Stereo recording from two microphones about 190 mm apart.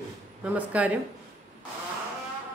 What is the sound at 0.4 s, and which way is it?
Speech, 5° right (ahead or behind).